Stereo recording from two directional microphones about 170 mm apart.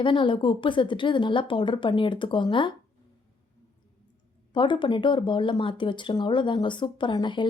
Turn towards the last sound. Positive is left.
turn(degrees=25)  # may be behind; listen again after turning